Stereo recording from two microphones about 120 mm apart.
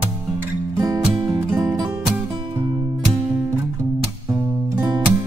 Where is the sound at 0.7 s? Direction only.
30° right (ahead or behind).